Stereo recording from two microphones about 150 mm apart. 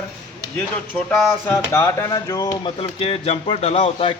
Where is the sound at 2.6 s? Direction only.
35° left (ahead or behind).